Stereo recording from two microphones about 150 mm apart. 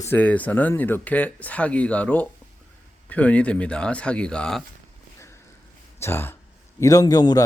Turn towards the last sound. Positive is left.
turn(degrees=25)  # may be behind; listen again after turning